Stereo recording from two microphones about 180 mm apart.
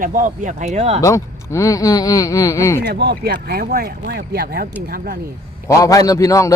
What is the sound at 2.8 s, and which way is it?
Speech, 65° right (ahead or behind).